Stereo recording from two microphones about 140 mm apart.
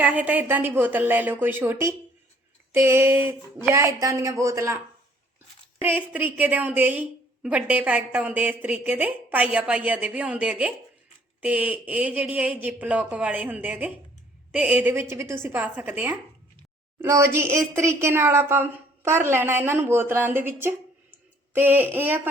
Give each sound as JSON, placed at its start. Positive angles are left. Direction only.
{"t": 0.0, "sound": "speech", "side_deg": -10}
{"t": 5.8, "sound": "speech", "side_deg": -15}